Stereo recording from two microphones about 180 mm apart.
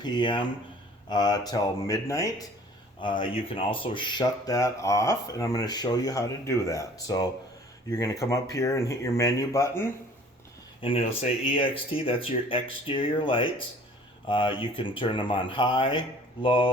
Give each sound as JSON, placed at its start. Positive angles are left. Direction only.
{"t": 0.0, "sound": "speech", "side_deg": 25}
{"t": 3.0, "sound": "speech", "side_deg": 30}
{"t": 10.8, "sound": "speech", "side_deg": 30}